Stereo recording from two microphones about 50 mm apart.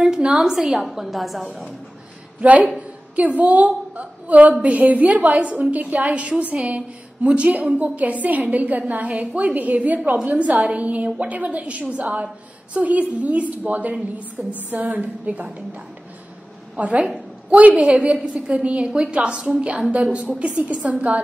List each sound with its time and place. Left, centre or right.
0.4 s a woman's voice: centre
2.4 s a woman's voice: right
16.7 s a woman's voice: right